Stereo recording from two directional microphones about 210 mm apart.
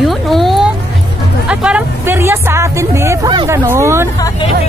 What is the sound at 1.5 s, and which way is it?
Music, 5° right (ahead or behind).